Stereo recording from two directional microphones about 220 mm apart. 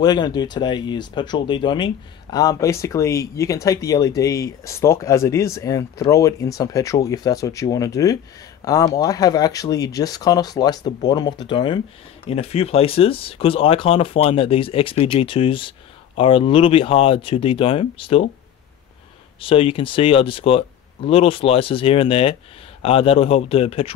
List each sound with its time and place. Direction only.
0.0 s speech: 20° left (ahead or behind)
19.4 s speech: 25° left (ahead or behind)